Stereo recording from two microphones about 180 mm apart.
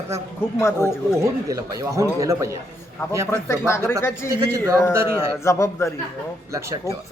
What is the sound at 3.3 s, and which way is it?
Speech, 15° left (ahead or behind).